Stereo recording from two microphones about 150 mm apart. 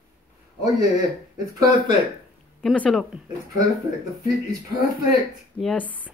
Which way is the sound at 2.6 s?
5° left (ahead or behind).